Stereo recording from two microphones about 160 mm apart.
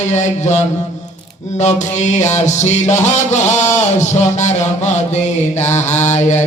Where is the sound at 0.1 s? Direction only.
45° left (ahead or behind).